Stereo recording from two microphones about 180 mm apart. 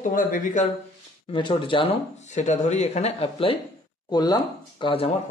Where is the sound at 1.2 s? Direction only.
30° left (ahead or behind).